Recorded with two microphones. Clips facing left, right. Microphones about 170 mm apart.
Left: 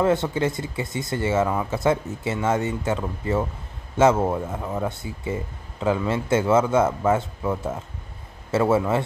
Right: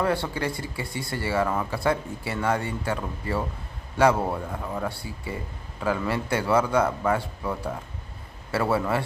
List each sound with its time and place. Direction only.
0.0 s speech: 20° left (ahead or behind)